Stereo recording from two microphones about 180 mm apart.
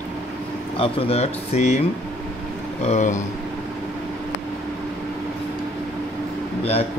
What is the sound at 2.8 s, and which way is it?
Speech, 40° left (ahead or behind).